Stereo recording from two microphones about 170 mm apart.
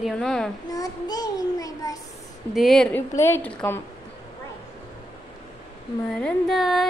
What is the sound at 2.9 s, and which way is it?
Speech, 15° left (ahead or behind).